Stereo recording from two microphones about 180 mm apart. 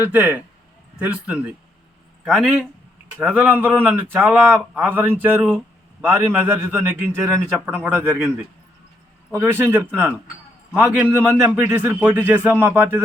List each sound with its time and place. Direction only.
0.0 s a man's voice: 10° right (ahead or behind)
9.3 s a man's voice: 10° right (ahead or behind)
10.8 s a man's voice: 10° right (ahead or behind)